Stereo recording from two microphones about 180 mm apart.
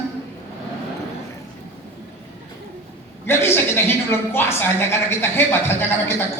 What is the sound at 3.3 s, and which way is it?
Speech, 15° left (ahead or behind).